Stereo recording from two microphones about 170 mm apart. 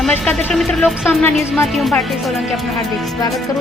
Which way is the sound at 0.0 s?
5° left (ahead or behind).